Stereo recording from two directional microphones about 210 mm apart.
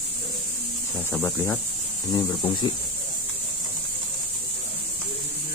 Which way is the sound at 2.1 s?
20° left (ahead or behind).